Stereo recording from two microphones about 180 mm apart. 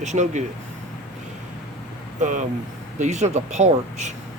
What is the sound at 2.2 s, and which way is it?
Speech, 45° right (ahead or behind).